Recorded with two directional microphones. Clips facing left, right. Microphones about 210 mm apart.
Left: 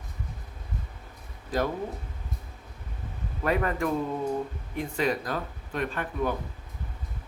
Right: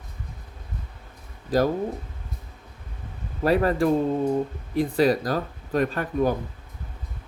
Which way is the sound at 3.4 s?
35° right (ahead or behind).